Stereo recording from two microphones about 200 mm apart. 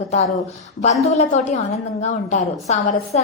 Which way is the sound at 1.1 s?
35° left (ahead or behind).